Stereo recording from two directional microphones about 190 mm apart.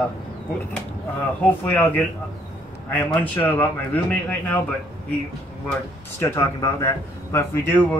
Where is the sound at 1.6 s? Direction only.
10° left (ahead or behind).